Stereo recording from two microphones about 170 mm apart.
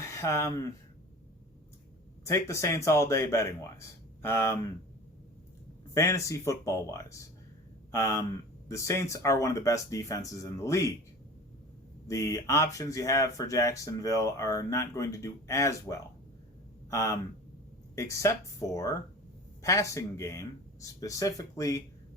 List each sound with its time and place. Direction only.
0.0 s speech: 15° left (ahead or behind)
2.2 s speech: 15° left (ahead or behind)
5.9 s speech: 15° left (ahead or behind)
12.0 s speech: 20° left (ahead or behind)